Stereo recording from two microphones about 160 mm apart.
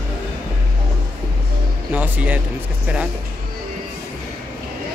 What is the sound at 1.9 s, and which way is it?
Speech, 10° right (ahead or behind).